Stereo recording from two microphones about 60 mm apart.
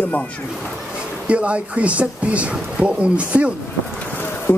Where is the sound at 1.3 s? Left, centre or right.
Right.